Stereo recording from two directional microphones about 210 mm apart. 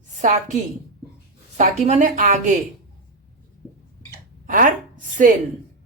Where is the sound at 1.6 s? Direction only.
35° right (ahead or behind).